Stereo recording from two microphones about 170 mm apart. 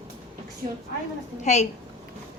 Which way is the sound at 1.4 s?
40° left (ahead or behind).